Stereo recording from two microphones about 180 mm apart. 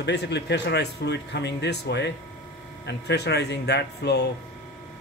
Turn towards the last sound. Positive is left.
turn(degrees=65)  # may be behind; listen again after turning